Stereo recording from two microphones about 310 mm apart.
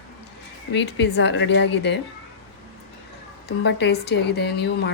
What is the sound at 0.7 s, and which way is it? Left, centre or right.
Speech, left.